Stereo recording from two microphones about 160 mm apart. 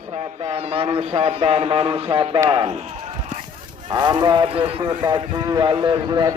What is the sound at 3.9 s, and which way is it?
Speech, 25° right (ahead or behind).